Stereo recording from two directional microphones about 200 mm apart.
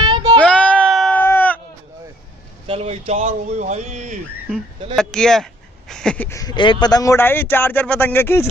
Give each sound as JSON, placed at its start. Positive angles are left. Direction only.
{"t": 0.0, "sound": "child singing", "side_deg": -20}
{"t": 0.4, "sound": "music", "side_deg": 5}
{"t": 2.6, "sound": "vehicle", "side_deg": -30}
{"t": 3.1, "sound": "speech", "side_deg": -30}
{"t": 4.9, "sound": "speech", "side_deg": 5}